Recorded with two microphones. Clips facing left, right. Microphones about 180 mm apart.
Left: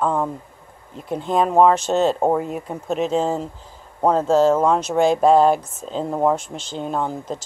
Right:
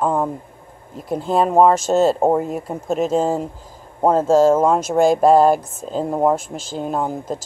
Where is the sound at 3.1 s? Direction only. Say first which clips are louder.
Right 2 dB; 10° right (ahead or behind).